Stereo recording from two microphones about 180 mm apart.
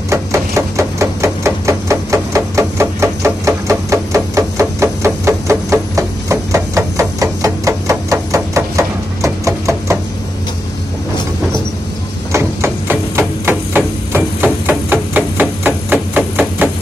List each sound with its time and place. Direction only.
0.1 s hammer: 15° right (ahead or behind)
12.3 s hammer: 15° right (ahead or behind)